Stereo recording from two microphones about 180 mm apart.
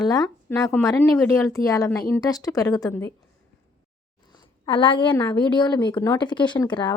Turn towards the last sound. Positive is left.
turn(degrees=25)  # may be behind; listen again after turning